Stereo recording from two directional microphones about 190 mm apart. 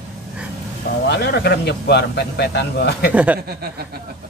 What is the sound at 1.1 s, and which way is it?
A man's voice, 60° left (ahead or behind).